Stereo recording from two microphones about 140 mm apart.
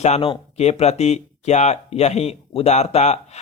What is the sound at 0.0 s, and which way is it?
Speech, 55° left (ahead or behind).